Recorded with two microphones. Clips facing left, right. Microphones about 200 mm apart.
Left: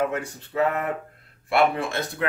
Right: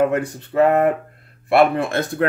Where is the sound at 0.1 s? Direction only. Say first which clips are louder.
Right 8 dB; 60° right (ahead or behind).